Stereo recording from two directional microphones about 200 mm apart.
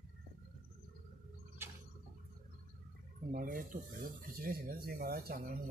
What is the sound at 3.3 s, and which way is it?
Speech, 45° right (ahead or behind).